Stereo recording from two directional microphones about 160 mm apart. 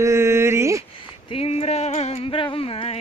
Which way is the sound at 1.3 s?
40° left (ahead or behind).